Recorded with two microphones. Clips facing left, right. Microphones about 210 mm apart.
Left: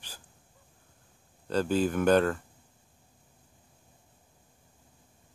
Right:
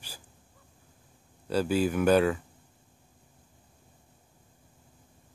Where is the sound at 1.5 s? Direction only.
10° right (ahead or behind).